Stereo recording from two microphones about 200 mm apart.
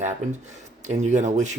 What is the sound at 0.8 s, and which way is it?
Speech, 35° right (ahead or behind).